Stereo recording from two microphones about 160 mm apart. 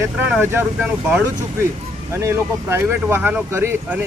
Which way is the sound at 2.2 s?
15° right (ahead or behind).